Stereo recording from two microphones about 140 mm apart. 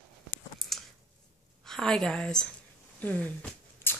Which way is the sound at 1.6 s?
5° left (ahead or behind).